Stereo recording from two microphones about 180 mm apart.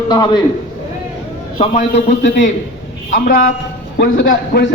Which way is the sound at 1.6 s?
40° left (ahead or behind).